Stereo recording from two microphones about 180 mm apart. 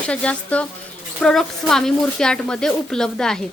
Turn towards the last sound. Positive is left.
turn(degrees=5)  # may be behind; listen again after turning